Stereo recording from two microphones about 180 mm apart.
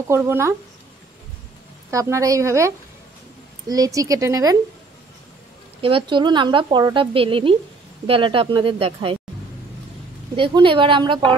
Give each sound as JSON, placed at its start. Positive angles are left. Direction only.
{"t": 0.1, "sound": "a woman's voice", "side_deg": -15}
{"t": 1.9, "sound": "a woman's voice", "side_deg": -15}
{"t": 5.8, "sound": "speech", "side_deg": -30}
{"t": 10.3, "sound": "speech", "side_deg": -30}